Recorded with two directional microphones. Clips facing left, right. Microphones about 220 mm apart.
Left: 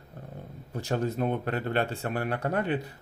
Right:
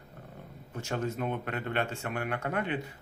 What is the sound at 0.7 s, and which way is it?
Speech, 35° left (ahead or behind).